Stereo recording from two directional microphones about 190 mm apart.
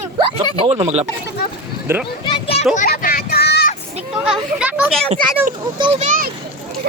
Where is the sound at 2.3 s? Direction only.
30° left (ahead or behind).